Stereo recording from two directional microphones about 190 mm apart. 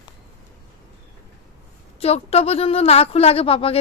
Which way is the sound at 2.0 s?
30° left (ahead or behind).